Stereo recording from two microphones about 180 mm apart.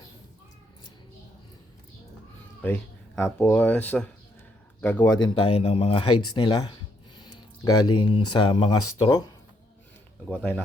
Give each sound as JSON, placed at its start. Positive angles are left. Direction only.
{"t": 2.6, "sound": "speech", "side_deg": 10}
{"t": 5.2, "sound": "speech", "side_deg": 30}
{"t": 10.2, "sound": "speech", "side_deg": 10}